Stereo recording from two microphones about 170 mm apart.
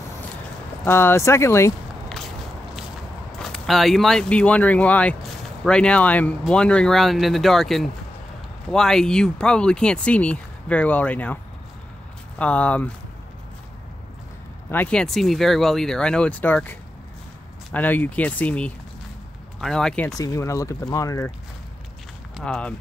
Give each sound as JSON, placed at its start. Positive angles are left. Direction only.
{"t": 0.8, "sound": "speech", "side_deg": 15}
{"t": 3.3, "sound": "speech", "side_deg": 5}
{"t": 12.4, "sound": "speech", "side_deg": 5}
{"t": 14.7, "sound": "speech", "side_deg": 10}
{"t": 20.2, "sound": "speech", "side_deg": 20}
{"t": 22.4, "sound": "speech", "side_deg": 5}